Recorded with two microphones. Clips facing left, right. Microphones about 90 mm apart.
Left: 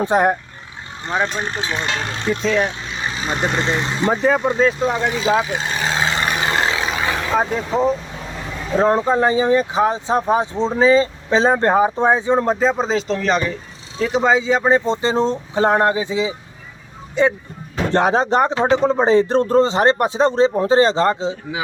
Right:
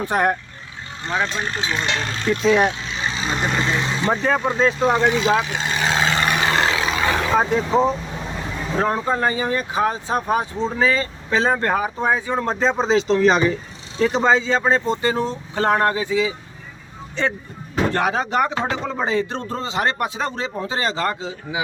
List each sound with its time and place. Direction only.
0.0 s speech: 20° left (ahead or behind)
2.4 s speech: 15° right (ahead or behind)
3.2 s speech: 20° left (ahead or behind)
4.1 s speech: 5° left (ahead or behind)
4.9 s vehicle: centre (ahead or behind); by 6.9 s 25° left (ahead or behind)
7.3 s speech: centre (ahead or behind)
8.8 s speech: 25° left (ahead or behind)
12.5 s speech: 5° left (ahead or behind)
14.0 s speech: 5° left (ahead or behind)
17.9 s speech: 30° left (ahead or behind)